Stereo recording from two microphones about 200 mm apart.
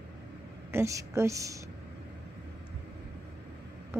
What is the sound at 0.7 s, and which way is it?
Speech, 15° right (ahead or behind).